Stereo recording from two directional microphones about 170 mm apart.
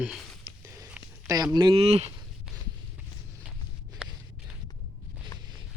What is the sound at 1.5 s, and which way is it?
Speech, 30° right (ahead or behind).